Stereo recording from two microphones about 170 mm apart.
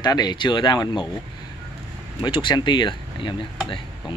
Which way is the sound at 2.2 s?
30° left (ahead or behind).